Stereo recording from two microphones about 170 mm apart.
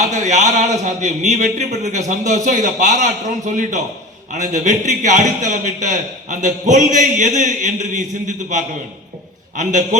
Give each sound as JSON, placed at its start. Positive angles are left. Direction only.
{"t": 0.0, "sound": "speech", "side_deg": -45}
{"t": 9.6, "sound": "speech", "side_deg": -45}